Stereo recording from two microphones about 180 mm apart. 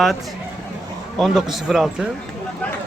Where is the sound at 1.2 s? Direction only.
Centre (ahead or behind).